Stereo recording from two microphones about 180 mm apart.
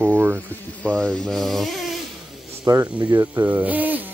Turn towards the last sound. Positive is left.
turn(degrees=-10)  # may be behind; listen again after turning